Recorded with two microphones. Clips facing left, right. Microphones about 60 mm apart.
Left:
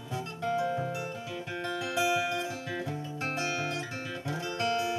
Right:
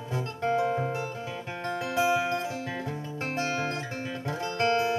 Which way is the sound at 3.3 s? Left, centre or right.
Right.